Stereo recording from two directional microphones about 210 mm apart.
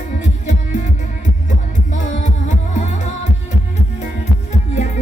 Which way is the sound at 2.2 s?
35° left (ahead or behind).